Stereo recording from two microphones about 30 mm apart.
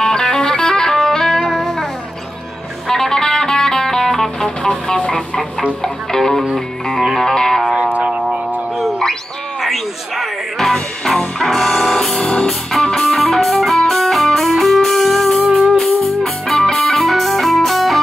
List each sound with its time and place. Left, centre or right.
0.0 s music: left
2.9 s music: centre
4.6 s vehicle: left
5.8 s music: centre
9.6 s music: centre